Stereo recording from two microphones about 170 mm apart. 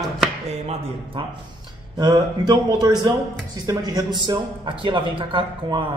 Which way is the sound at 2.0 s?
25° right (ahead or behind).